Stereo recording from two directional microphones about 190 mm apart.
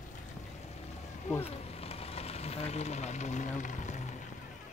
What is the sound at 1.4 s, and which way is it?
Vehicle, 30° left (ahead or behind).